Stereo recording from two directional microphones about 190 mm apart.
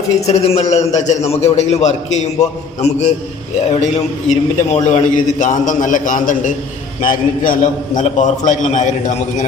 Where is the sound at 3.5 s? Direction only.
40° left (ahead or behind).